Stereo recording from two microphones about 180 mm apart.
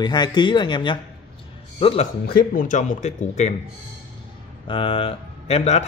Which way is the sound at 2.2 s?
50° left (ahead or behind).